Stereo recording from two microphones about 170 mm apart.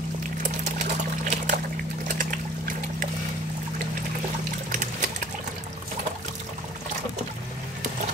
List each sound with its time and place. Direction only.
0.4 s water: 45° right (ahead or behind)
2.0 s a sound: 55° right (ahead or behind)
4.6 s water: 50° right (ahead or behind)